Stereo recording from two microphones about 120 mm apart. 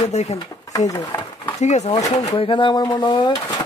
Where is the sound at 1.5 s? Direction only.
70° left (ahead or behind).